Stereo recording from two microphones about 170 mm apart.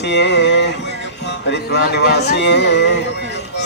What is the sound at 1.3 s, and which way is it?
Music, 80° left.